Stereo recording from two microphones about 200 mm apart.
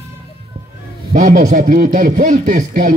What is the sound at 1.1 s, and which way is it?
Speech, 40° right (ahead or behind).